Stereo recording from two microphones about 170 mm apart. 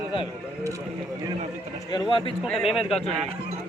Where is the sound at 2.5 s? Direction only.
Centre (ahead or behind).